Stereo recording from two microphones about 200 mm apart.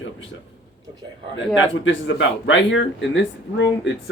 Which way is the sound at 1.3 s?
65° left (ahead or behind).